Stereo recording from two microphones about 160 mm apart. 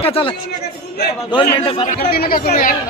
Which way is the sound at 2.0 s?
75° left (ahead or behind).